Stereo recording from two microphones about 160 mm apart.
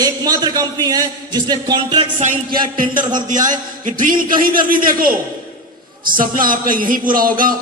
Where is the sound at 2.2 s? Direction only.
55° right (ahead or behind).